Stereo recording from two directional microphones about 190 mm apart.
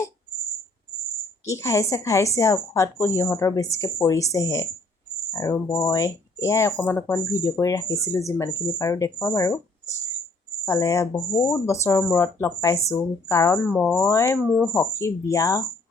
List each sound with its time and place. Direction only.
1.5 s speech: 15° left (ahead or behind)
10.7 s speech: 15° left (ahead or behind)
14.0 s speech: 15° left (ahead or behind)